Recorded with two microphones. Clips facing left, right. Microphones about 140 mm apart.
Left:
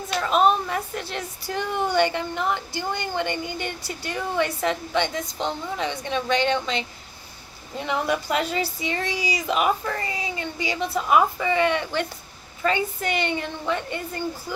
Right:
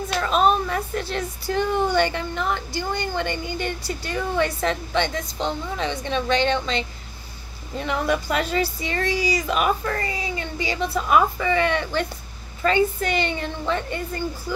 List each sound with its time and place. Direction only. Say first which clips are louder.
0.2 s speech: even; 15° left (ahead or behind)